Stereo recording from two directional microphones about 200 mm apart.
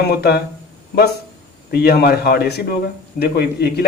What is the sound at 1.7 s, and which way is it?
A man's voice, 50° left (ahead or behind).